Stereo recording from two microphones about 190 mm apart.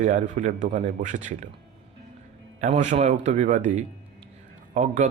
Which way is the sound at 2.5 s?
40° right (ahead or behind).